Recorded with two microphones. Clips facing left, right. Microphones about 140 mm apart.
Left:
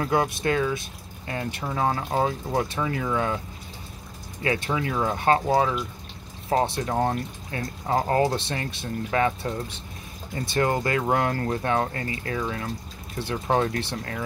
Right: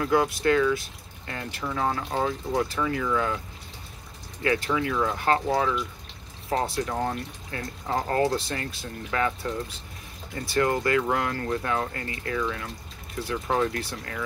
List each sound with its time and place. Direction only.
0.0 s speech: 25° left (ahead or behind)
4.4 s speech: 25° left (ahead or behind)